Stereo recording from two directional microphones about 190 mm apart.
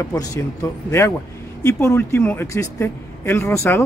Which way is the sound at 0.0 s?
20° left (ahead or behind).